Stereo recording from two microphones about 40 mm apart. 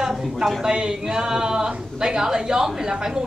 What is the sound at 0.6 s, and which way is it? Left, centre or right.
A woman's voice, right.